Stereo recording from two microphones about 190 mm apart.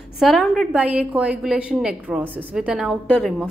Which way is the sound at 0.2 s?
Centre (ahead or behind).